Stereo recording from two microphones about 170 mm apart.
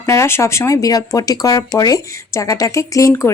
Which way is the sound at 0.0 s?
15° left (ahead or behind).